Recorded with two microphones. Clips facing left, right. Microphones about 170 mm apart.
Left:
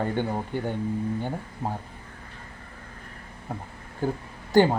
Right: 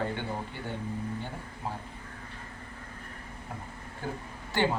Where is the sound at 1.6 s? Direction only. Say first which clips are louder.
Left 6 dB; 40° left (ahead or behind).